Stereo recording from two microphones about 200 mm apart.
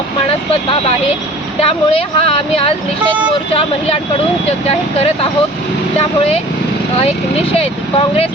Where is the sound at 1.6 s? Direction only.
30° left (ahead or behind).